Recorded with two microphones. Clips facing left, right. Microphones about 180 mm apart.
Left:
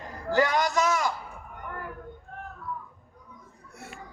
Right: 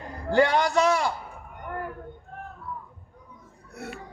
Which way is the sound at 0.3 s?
30° right (ahead or behind).